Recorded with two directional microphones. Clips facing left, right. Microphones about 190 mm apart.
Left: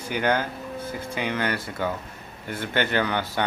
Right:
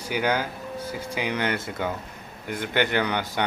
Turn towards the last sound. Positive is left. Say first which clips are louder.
# even
turn(degrees=-15)  # may be behind; listen again after turning